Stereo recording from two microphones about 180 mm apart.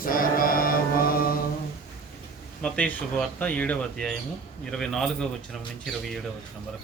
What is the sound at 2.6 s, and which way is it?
A man's voice, 10° left (ahead or behind).